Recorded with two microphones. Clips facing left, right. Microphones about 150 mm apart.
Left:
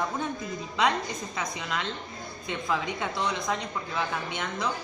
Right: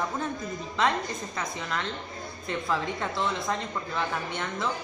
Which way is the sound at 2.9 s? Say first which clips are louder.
Even; centre (ahead or behind).